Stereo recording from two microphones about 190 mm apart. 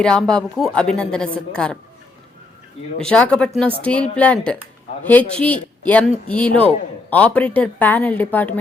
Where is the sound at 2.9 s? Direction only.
5° left (ahead or behind).